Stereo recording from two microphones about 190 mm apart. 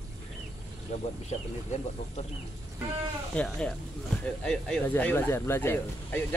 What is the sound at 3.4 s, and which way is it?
Speech, 5° left (ahead or behind).